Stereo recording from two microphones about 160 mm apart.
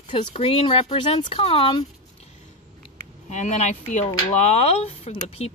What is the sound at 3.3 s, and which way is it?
Speech, 45° left (ahead or behind).